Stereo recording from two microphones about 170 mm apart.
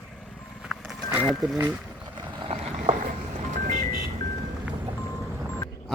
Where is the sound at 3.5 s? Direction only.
45° right (ahead or behind).